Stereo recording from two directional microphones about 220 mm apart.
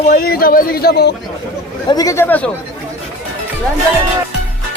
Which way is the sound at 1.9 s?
15° left (ahead or behind).